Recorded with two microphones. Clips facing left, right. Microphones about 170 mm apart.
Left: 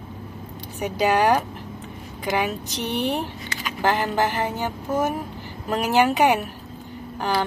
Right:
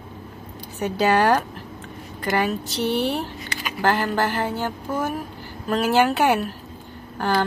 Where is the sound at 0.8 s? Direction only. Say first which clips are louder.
Right 1 dB; 10° left (ahead or behind).